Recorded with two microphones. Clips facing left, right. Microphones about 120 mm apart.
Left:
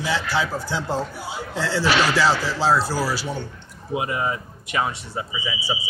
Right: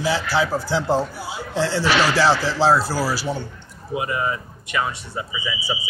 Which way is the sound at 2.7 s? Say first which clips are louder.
Right 2 dB; 5° right (ahead or behind).